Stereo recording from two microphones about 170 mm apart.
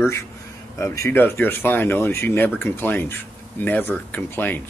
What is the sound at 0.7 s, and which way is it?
Speech, 15° left (ahead or behind).